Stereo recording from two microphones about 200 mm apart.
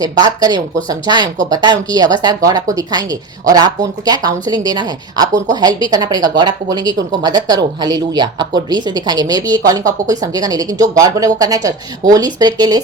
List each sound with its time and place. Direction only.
0.0 s speech: 20° right (ahead or behind)